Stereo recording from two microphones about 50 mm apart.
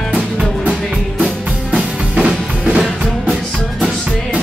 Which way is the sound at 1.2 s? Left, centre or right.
Centre.